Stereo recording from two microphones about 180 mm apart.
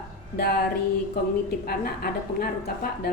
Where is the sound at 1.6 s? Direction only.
55° left (ahead or behind).